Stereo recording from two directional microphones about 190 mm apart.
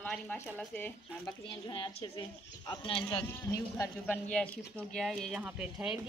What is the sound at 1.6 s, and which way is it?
A woman's voice, 25° left (ahead or behind).